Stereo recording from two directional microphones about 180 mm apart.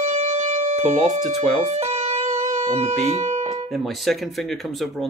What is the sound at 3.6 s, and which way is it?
Speech, centre (ahead or behind).